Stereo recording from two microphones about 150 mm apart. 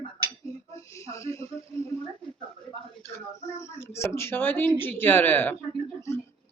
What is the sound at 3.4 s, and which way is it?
Speech, 20° left (ahead or behind).